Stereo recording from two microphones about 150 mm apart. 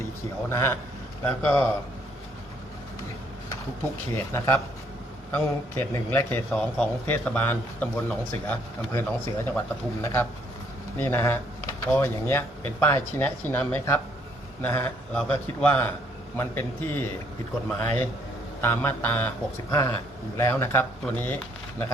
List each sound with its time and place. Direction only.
0.5 s a man's voice: 15° left (ahead or behind)
4.3 s a man's voice: 15° left (ahead or behind)
18.6 s a man's voice: 15° left (ahead or behind)